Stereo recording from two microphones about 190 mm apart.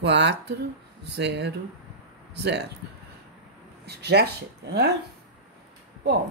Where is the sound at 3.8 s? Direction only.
60° right (ahead or behind).